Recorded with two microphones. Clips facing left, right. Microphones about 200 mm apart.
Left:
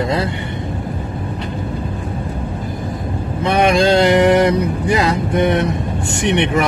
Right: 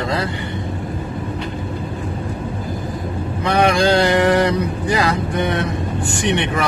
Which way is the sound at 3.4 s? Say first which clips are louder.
Left 2 dB; 25° left (ahead or behind).